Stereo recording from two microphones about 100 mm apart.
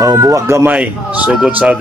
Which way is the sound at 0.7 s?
15° right (ahead or behind).